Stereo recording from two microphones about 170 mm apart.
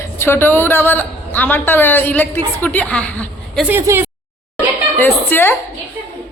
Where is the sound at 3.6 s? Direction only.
15° right (ahead or behind).